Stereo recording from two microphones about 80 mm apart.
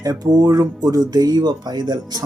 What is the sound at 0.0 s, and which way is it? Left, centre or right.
Speech, right.